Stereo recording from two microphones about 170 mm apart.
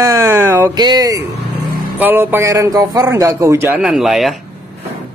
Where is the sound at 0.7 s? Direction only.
25° right (ahead or behind).